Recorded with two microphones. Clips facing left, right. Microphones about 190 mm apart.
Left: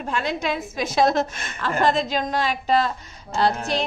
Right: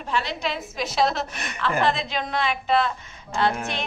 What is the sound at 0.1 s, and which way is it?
A woman's voice, 50° left (ahead or behind).